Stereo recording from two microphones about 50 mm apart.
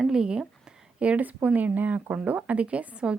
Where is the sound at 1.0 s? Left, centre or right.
Right.